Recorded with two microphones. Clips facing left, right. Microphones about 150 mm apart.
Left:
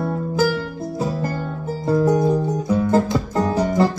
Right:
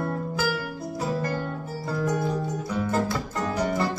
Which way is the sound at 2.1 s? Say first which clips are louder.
Left 9 dB; 20° left (ahead or behind).